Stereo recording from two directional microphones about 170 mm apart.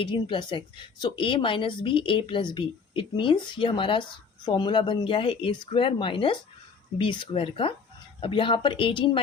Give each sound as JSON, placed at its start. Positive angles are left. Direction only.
{"t": 0.0, "sound": "a woman's voice", "side_deg": 30}